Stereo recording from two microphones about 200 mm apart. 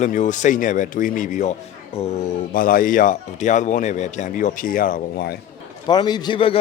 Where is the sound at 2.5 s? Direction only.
45° left (ahead or behind).